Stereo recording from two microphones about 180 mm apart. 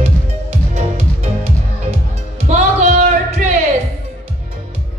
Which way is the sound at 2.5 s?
40° right (ahead or behind).